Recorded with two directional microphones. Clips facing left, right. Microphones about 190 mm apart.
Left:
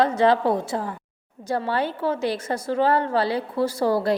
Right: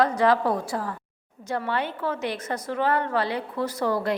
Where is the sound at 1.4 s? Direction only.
35° left (ahead or behind).